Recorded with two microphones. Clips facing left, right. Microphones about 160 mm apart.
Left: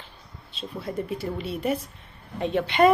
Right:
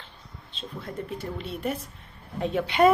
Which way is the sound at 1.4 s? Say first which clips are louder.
Left 4 dB; 5° left (ahead or behind).